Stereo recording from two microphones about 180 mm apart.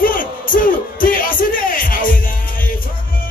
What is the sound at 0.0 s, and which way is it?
Music, 50° left (ahead or behind).